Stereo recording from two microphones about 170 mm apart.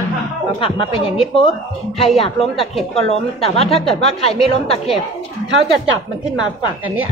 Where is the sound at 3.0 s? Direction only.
35° left (ahead or behind).